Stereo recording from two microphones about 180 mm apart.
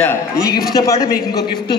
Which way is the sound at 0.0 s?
15° left (ahead or behind).